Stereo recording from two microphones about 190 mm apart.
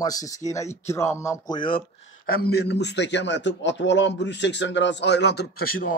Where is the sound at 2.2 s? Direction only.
55° left (ahead or behind).